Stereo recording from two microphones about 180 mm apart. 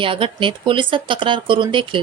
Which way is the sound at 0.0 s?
30° right (ahead or behind).